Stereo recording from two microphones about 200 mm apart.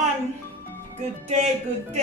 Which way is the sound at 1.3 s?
35° right (ahead or behind).